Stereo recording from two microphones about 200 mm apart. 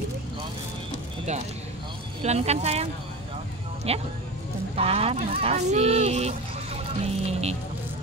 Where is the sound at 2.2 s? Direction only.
35° right (ahead or behind).